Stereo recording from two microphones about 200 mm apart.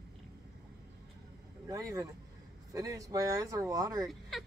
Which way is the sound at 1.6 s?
15° right (ahead or behind).